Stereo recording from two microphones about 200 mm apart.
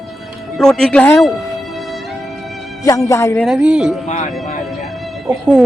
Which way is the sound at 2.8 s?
15° left (ahead or behind).